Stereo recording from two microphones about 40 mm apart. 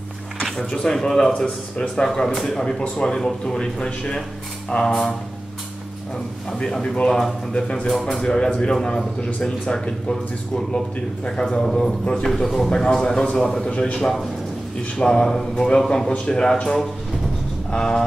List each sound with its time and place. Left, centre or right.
0.7 s a man's voice: left
2.2 s a man's voice: centre
6.8 s a man's voice: centre
11.2 s a man's voice: left
12.3 s a man's voice: centre
13.7 s a man's voice: left
17.6 s a sound: centre